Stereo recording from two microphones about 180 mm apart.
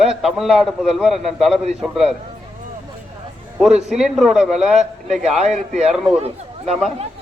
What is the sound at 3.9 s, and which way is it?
A man's voice, 5° right (ahead or behind).